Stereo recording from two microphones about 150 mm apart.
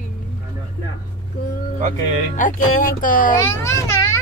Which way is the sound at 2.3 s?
65° left (ahead or behind).